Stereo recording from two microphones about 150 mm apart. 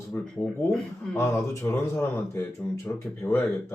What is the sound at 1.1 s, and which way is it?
Speech, 15° left (ahead or behind).